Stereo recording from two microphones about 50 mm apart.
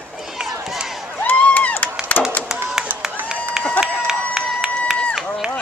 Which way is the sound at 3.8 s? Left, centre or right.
Centre.